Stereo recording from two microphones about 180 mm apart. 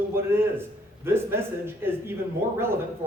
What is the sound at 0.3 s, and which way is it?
A man's voice, 15° right (ahead or behind).